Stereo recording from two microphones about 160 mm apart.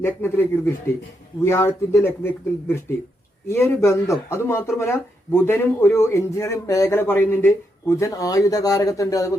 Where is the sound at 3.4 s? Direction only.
15° left (ahead or behind).